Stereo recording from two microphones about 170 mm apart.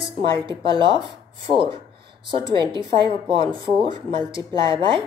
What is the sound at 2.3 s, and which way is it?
A woman's voice, 30° right (ahead or behind).